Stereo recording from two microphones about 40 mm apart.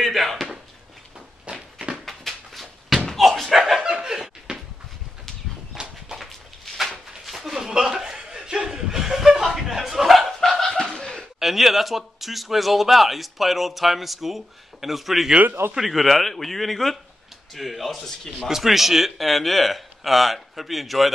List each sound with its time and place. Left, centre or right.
0.0 s chop: centre
1.4 s a sound: right
2.0 s a sound: centre
3.2 s slam: centre
3.8 s laughter: centre
5.8 s walk: centre
6.1 s a sound: centre
7.2 s chuckle: centre
10.6 s snicker: centre
11.3 s a man's voice: centre